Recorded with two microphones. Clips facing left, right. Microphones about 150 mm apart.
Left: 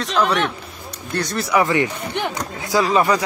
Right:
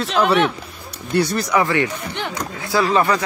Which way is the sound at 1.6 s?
15° left (ahead or behind).